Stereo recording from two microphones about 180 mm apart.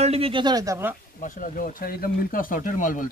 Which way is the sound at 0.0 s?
35° right (ahead or behind).